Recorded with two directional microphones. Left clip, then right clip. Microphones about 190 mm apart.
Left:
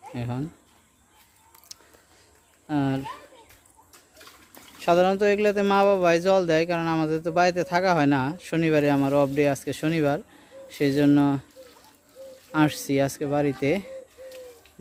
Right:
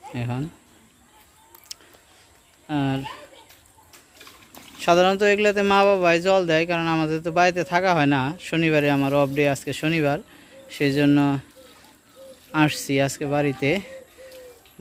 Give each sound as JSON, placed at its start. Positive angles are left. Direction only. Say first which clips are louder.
{"t": 0.1, "sound": "speech", "louder": "right 2 dB", "side_deg": 10}
{"t": 1.7, "sound": "a sound", "louder": "right 6 dB", "side_deg": 15}
{"t": 2.6, "sound": "speech", "louder": "right 1 dB", "side_deg": 20}
{"t": 4.8, "sound": "speech", "louder": "right 3 dB", "side_deg": 5}
{"t": 12.5, "sound": "speech", "louder": "right 2 dB", "side_deg": 15}